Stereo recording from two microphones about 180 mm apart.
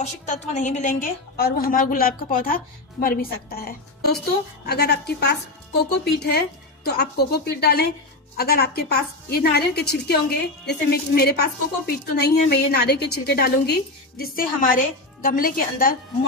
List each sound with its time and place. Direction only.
0.0 s a woman's voice: 40° left (ahead or behind)
1.3 s a woman's voice: 55° left (ahead or behind)